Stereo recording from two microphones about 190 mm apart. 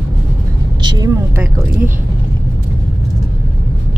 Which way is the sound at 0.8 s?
20° right (ahead or behind).